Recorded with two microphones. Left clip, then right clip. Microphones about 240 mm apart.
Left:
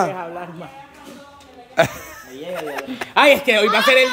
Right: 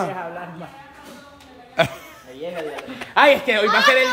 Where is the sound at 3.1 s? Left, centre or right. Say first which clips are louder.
Left 2 dB; left.